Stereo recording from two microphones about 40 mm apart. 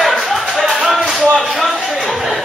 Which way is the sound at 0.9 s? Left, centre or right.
Centre.